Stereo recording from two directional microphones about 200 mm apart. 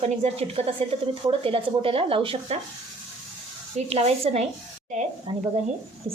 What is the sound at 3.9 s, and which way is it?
Speech, 30° right (ahead or behind).